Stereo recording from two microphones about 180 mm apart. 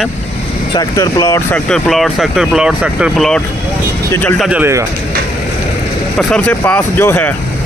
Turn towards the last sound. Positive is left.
turn(degrees=10)  # may be behind; listen again after turning